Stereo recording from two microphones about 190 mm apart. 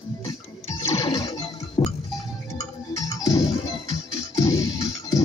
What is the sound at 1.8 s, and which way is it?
Goat, 20° left (ahead or behind).